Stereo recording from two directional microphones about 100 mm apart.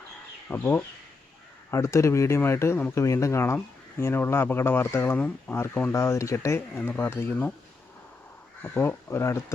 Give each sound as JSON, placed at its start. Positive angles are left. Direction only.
{"t": 0.5, "sound": "speech", "side_deg": 20}
{"t": 8.6, "sound": "speech", "side_deg": 20}